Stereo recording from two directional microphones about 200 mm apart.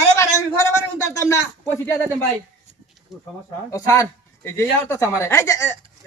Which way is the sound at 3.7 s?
15° left (ahead or behind).